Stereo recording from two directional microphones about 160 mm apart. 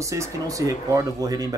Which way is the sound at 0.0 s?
20° right (ahead or behind).